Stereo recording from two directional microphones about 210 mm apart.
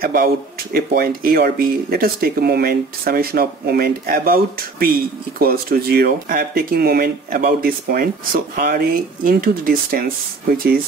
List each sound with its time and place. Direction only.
0.0 s speech: 45° right (ahead or behind)